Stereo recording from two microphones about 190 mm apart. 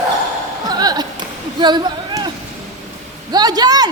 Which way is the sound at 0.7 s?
20° right (ahead or behind).